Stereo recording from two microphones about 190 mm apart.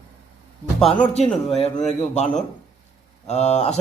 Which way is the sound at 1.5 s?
35° left (ahead or behind).